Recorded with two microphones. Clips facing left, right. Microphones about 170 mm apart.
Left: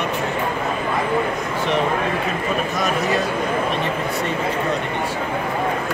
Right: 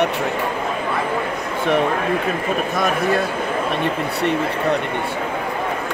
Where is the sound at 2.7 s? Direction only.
55° right (ahead or behind).